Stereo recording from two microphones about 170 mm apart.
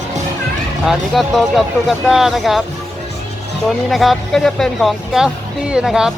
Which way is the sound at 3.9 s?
Centre (ahead or behind).